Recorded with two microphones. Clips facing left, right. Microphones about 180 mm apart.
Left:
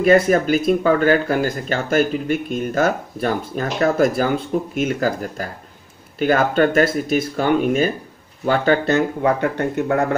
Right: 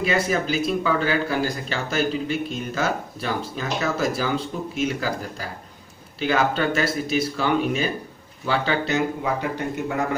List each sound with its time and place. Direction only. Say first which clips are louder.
0.0 s speech: left 8 dB; 50° left (ahead or behind)